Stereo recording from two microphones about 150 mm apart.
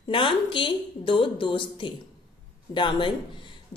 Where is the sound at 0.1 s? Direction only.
35° left (ahead or behind).